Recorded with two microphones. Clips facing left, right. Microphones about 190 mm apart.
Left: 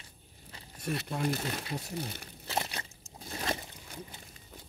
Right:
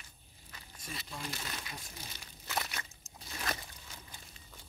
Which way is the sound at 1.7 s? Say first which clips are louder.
Left 12 dB; 65° left (ahead or behind).